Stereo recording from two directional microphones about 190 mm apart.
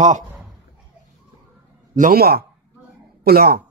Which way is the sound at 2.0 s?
50° right (ahead or behind).